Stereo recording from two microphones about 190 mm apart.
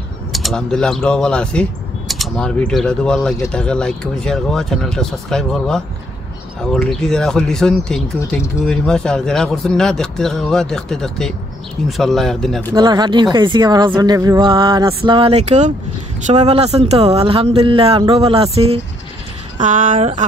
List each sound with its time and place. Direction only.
0.3 s speech: centre (ahead or behind)
12.7 s speech: 20° right (ahead or behind)
19.6 s speech: 40° right (ahead or behind)